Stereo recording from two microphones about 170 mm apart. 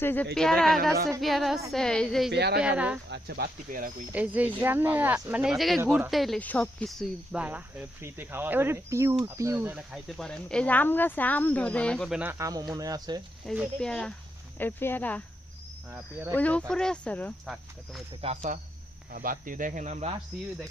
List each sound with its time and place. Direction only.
0.0 s speech: 10° left (ahead or behind)
2.3 s a woman's voice: 75° right (ahead or behind)
2.6 s speech: 5° right (ahead or behind)
3.1 s speech: 70° right (ahead or behind); by 3.9 s 55° right (ahead or behind)
4.1 s speech: 10° right (ahead or behind)
10.1 s speech: 5° left (ahead or behind)
12.2 s speech: 15° right (ahead or behind)
13.4 s speech: centre (ahead or behind)
15.9 s speech: 10° right (ahead or behind)
16.3 s speech: 10° left (ahead or behind)
18.2 s speech: 45° right (ahead or behind)